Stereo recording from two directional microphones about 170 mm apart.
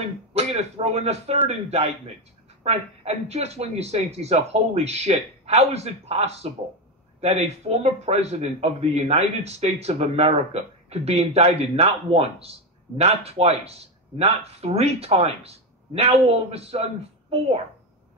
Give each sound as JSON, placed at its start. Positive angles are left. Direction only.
{"t": 0.3, "sound": "a man's voice", "side_deg": -35}